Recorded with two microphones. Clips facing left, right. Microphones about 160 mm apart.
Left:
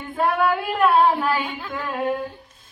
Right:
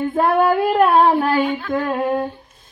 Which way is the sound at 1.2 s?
40° right (ahead or behind).